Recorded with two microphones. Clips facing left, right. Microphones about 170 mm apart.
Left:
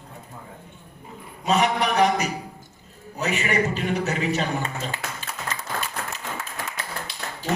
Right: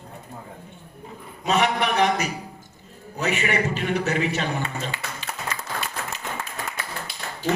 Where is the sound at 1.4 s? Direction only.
40° left (ahead or behind).